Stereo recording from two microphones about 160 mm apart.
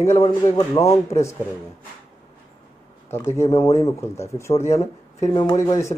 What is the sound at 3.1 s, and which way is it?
Speech, 15° left (ahead or behind).